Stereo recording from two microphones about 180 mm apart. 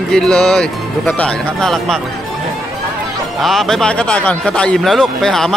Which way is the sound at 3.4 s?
Centre (ahead or behind).